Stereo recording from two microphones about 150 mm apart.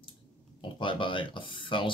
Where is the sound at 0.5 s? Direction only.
35° left (ahead or behind).